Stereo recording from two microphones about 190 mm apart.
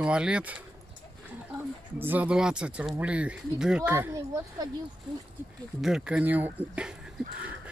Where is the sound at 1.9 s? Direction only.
10° right (ahead or behind).